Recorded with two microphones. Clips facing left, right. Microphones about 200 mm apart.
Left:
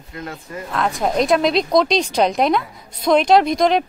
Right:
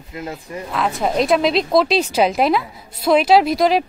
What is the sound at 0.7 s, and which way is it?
A woman's voice, centre (ahead or behind).